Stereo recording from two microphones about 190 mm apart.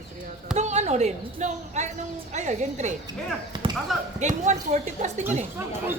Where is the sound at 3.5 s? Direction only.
20° right (ahead or behind).